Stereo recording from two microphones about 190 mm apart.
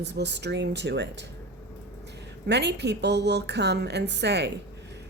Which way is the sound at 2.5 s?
65° right (ahead or behind).